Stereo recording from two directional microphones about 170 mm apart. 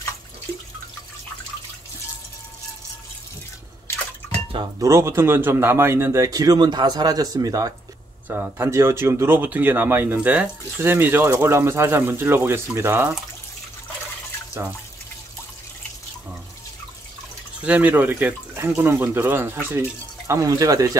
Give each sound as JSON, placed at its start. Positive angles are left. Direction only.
{"t": 4.5, "sound": "speech", "side_deg": -30}
{"t": 4.8, "sound": "speech", "side_deg": -15}
{"t": 14.6, "sound": "speech", "side_deg": -20}
{"t": 17.6, "sound": "speech", "side_deg": -10}